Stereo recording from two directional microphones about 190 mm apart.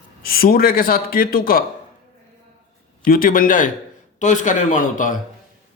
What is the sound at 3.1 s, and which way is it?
Speech, 45° left (ahead or behind).